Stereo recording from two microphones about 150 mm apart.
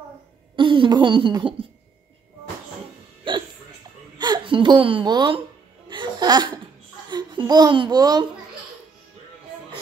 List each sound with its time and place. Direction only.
0.6 s speech: 35° right (ahead or behind)
3.3 s hiccup: 35° right (ahead or behind)
4.2 s speech: 30° right (ahead or behind)
5.9 s music: 30° right (ahead or behind)
7.1 s speech: 30° right (ahead or behind)